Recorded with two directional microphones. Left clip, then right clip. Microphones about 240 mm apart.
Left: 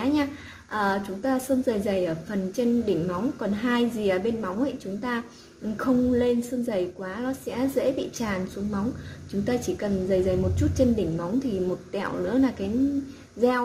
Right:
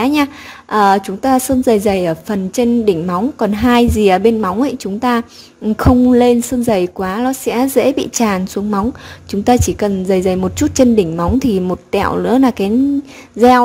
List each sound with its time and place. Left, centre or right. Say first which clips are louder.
0.0 s a woman's voice: right 11 dB; right